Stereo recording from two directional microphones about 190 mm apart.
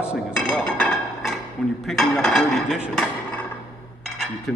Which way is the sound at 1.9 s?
Centre (ahead or behind).